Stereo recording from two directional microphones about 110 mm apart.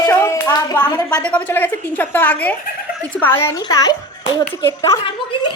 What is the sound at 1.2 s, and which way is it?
A woman's voice, 15° left (ahead or behind).